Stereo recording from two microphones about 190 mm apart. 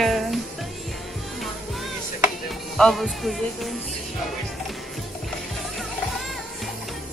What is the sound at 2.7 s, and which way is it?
Music, centre (ahead or behind).